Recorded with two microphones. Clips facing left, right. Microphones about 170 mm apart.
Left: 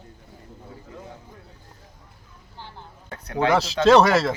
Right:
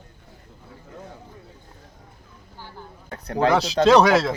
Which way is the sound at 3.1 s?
35° right (ahead or behind).